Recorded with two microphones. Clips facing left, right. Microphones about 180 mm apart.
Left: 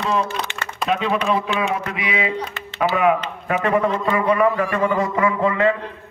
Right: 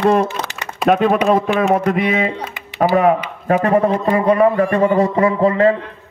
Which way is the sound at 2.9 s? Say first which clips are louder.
Right 4 dB; 40° right (ahead or behind).